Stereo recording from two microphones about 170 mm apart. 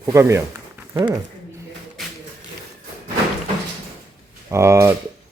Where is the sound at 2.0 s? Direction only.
Centre (ahead or behind).